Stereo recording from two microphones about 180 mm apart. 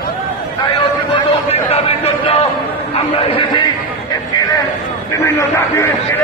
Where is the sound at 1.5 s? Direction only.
35° left (ahead or behind).